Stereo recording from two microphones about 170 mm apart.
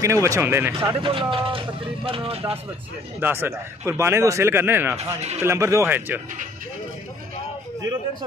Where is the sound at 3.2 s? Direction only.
15° right (ahead or behind).